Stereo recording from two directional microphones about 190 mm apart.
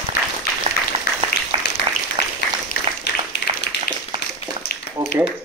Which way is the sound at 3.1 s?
65° left (ahead or behind).